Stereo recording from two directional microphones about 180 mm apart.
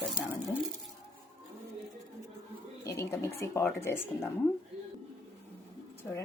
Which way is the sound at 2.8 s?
15° left (ahead or behind).